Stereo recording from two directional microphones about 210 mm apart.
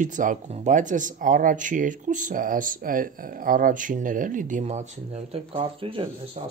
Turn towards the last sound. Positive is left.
turn(degrees=-25)  # may be behind; listen again after turning